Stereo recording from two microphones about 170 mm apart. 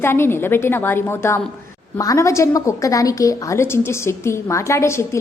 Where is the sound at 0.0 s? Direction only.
15° left (ahead or behind).